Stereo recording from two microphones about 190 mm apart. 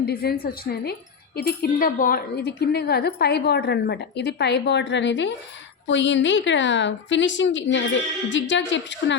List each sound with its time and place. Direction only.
0.0 s a woman's voice: 55° left (ahead or behind)